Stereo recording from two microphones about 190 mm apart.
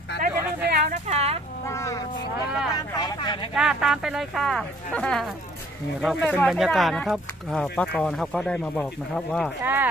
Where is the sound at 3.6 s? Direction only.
Centre (ahead or behind).